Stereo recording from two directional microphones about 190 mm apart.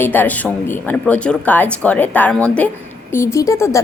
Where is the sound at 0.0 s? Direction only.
10° left (ahead or behind).